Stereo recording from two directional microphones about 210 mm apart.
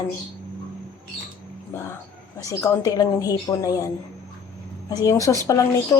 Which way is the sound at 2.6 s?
15° left (ahead or behind).